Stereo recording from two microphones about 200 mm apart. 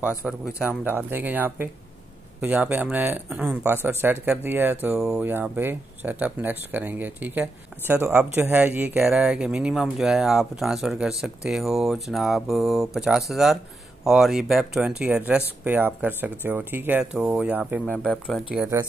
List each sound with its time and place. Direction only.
0.2 s speech: centre (ahead or behind)
0.7 s speech: 10° right (ahead or behind)
17.8 s speech: 5° left (ahead or behind)